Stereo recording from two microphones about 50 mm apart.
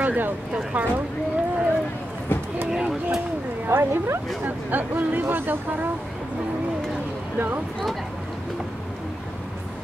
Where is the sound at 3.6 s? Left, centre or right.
Right.